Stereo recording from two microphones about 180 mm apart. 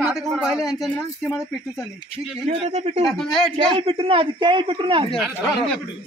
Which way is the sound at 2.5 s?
40° right (ahead or behind).